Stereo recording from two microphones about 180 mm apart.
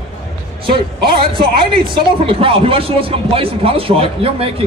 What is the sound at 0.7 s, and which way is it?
A man's voice, 30° right (ahead or behind).